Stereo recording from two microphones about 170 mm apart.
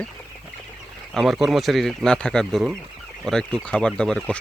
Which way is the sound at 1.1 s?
Centre (ahead or behind).